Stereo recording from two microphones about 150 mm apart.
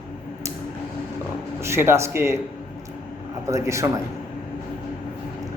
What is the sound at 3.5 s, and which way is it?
Speech, 20° right (ahead or behind).